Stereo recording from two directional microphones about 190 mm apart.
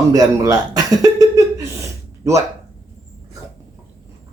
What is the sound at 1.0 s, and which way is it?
Cough, 15° right (ahead or behind).